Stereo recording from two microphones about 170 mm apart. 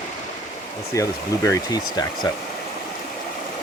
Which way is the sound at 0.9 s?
20° left (ahead or behind).